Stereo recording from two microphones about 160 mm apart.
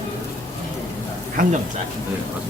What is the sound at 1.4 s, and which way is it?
Speech, 55° right (ahead or behind).